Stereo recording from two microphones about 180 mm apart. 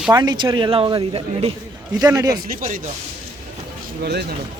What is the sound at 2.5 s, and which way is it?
Speech, 50° right (ahead or behind).